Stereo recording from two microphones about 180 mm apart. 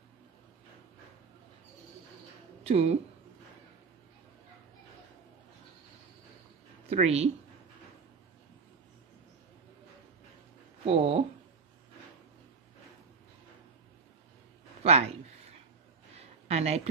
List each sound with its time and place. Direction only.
2.6 s speech: 35° right (ahead or behind)
6.9 s a woman's voice: 35° right (ahead or behind)
10.9 s speech: 35° right (ahead or behind)
14.8 s speech: 35° right (ahead or behind)
16.2 s a sound: 35° right (ahead or behind)